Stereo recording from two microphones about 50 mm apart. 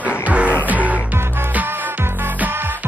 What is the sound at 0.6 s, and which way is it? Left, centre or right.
Music, right.